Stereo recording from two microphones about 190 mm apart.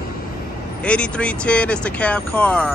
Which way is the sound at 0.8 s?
5° left (ahead or behind).